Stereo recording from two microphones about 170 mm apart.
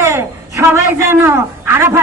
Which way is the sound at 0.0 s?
15° right (ahead or behind).